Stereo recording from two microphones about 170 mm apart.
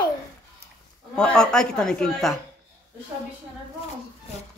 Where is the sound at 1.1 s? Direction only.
5° left (ahead or behind).